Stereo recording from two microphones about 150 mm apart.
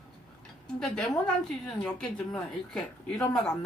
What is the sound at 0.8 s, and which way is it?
A woman's voice, 5° left (ahead or behind).